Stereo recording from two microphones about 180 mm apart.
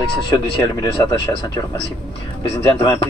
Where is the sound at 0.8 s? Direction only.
25° left (ahead or behind).